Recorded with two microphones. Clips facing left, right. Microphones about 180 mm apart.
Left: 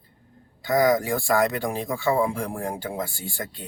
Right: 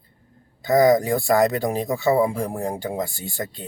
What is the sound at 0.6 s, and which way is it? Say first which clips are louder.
Speech: right 4 dB; 20° right (ahead or behind).